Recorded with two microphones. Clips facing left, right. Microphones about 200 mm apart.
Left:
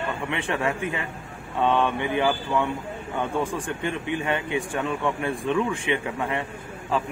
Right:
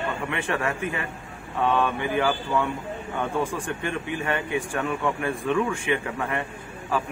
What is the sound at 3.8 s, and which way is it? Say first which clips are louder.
Speech: left 2 dB; 20° left (ahead or behind).